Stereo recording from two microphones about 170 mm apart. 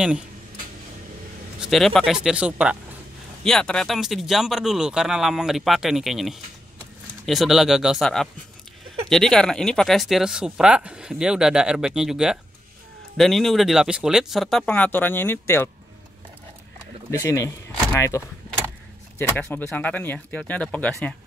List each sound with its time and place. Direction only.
1.6 s speech: centre (ahead or behind)
3.4 s speech: 5° left (ahead or behind)
17.2 s speech: 15° left (ahead or behind)
19.3 s speech: 10° left (ahead or behind)